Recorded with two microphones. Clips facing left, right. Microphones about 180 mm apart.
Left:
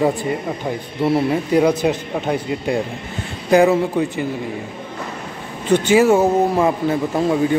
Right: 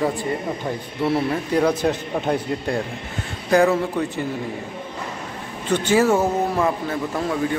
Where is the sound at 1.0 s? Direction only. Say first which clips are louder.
Left 4 dB; 15° left (ahead or behind).